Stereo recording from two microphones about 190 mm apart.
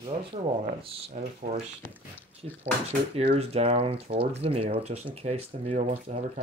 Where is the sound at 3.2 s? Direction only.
35° right (ahead or behind).